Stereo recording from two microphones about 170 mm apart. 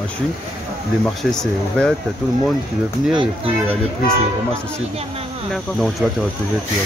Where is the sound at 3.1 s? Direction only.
35° right (ahead or behind).